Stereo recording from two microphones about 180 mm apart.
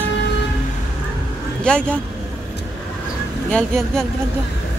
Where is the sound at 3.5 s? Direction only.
5° left (ahead or behind).